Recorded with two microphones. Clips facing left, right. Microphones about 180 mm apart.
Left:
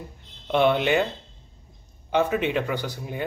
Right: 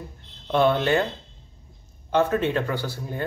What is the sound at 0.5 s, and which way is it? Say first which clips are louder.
Speech: even; 15° left (ahead or behind).